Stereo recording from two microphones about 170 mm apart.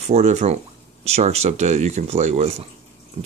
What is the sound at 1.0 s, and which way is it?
Speech, 40° right (ahead or behind).